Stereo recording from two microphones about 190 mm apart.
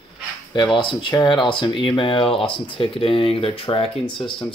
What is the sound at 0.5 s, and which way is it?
Speech, 25° left (ahead or behind).